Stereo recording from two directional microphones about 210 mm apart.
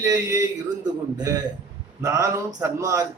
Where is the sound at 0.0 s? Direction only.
15° right (ahead or behind).